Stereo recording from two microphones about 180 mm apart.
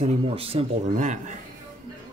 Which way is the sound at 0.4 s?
35° right (ahead or behind).